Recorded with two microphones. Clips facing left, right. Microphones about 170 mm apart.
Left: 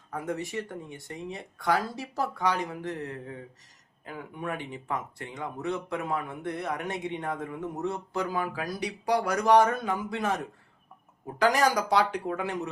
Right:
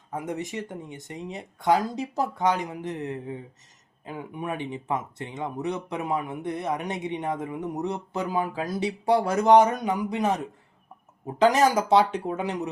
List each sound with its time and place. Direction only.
0.1 s speech: 20° right (ahead or behind)